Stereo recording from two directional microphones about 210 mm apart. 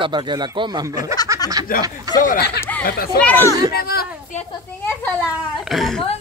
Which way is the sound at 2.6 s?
10° left (ahead or behind).